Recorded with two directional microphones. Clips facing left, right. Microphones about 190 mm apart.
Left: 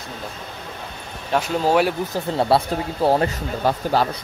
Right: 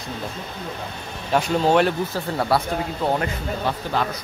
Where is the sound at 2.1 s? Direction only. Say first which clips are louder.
Left 3 dB; 25° left (ahead or behind).